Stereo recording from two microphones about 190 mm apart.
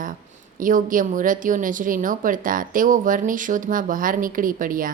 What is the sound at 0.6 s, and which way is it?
A woman's voice, 45° right (ahead or behind).